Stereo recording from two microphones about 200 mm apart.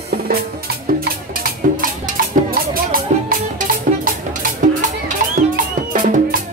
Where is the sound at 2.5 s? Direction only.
45° right (ahead or behind).